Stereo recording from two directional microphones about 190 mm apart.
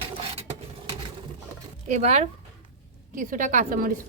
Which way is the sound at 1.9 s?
35° right (ahead or behind).